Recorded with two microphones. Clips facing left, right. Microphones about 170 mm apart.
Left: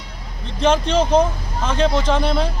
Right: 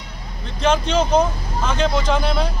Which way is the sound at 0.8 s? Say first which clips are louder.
Left 1 dB; 30° left (ahead or behind).